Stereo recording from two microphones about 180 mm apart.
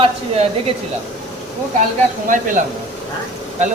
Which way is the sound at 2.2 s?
45° right (ahead or behind).